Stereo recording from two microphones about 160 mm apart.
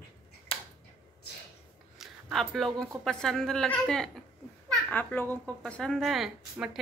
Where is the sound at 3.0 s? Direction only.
5° left (ahead or behind).